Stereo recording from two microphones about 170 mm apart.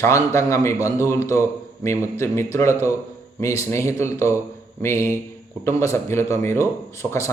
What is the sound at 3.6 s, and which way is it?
Speech, 15° left (ahead or behind).